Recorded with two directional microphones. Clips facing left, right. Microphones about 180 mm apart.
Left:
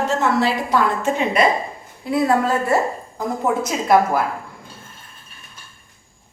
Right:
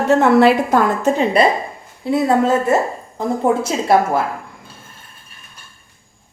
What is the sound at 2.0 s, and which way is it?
A woman's voice, 25° right (ahead or behind).